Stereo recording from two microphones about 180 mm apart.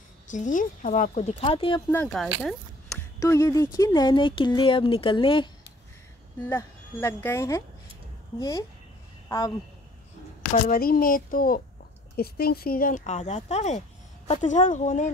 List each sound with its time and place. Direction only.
0.3 s speech: 45° left (ahead or behind); by 1.8 s 30° left (ahead or behind)
1.9 s speech: 5° left (ahead or behind)
3.2 s speech: 20° left (ahead or behind)
6.4 s speech: 15° left (ahead or behind)
10.6 s speech: 55° left (ahead or behind)